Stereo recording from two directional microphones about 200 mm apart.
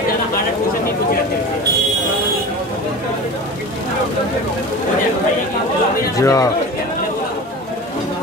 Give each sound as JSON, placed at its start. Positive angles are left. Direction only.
{"t": 6.1, "sound": "speech", "side_deg": 15}